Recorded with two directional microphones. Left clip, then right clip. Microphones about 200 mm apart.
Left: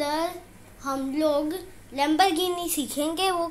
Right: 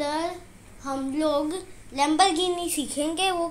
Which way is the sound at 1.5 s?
10° right (ahead or behind).